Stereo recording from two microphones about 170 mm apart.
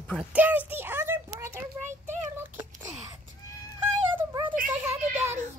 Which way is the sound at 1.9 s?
45° right (ahead or behind).